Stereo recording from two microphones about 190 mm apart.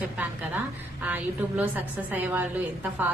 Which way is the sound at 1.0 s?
10° right (ahead or behind).